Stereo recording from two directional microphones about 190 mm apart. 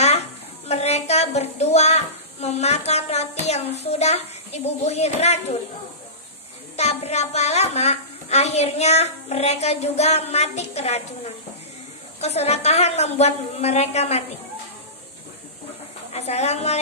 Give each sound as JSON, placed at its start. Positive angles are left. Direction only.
{"t": 0.0, "sound": "a sound", "side_deg": 35}
{"t": 3.8, "sound": "a woman's voice", "side_deg": 35}
{"t": 6.8, "sound": "a woman's voice", "side_deg": 35}
{"t": 16.1, "sound": "a woman's voice", "side_deg": 35}